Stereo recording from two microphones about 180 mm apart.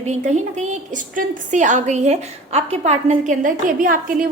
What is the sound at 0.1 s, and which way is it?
A woman's voice, 40° right (ahead or behind).